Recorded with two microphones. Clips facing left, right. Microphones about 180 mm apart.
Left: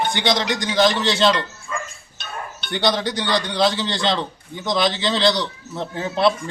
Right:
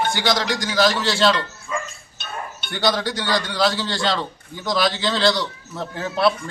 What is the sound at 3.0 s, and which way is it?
A man's voice, 20° left (ahead or behind).